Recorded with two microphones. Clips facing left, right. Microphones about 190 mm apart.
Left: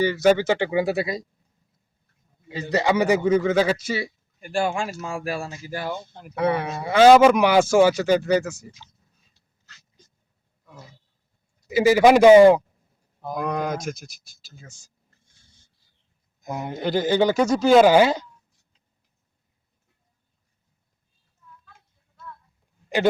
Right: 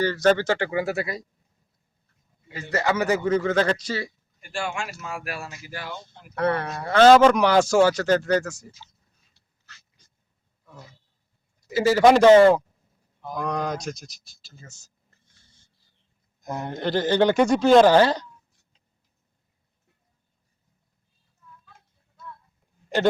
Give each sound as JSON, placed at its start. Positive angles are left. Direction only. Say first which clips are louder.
{"t": 0.0, "sound": "speech", "louder": "left 2 dB", "side_deg": 10}
{"t": 2.5, "sound": "speech", "louder": "left 3 dB", "side_deg": 20}
{"t": 4.4, "sound": "speech", "louder": "left 6 dB", "side_deg": 40}
{"t": 5.8, "sound": "speech", "louder": "left 8 dB", "side_deg": 45}
{"t": 6.3, "sound": "speech", "louder": "left 1 dB", "side_deg": 10}
{"t": 8.8, "sound": "whispering", "louder": "even", "side_deg": -10}
{"t": 11.7, "sound": "speech", "louder": "left 2 dB", "side_deg": 15}
{"t": 16.4, "sound": "speech", "louder": "left 1 dB", "side_deg": 5}